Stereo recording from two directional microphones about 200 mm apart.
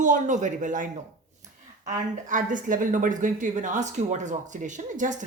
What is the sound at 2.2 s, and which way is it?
Speech, 40° right (ahead or behind).